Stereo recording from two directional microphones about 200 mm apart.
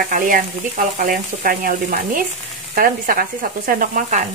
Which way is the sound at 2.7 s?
45° right (ahead or behind).